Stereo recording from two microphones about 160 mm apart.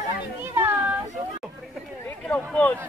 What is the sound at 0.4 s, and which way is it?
Children playing, 15° right (ahead or behind).